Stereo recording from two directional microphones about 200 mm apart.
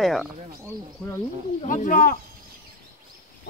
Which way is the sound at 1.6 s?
40° left (ahead or behind).